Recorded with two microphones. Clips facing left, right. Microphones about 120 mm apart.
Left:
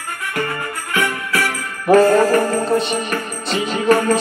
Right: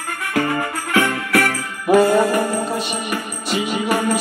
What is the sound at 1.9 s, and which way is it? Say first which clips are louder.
Music: left 2 dB; 15° right (ahead or behind).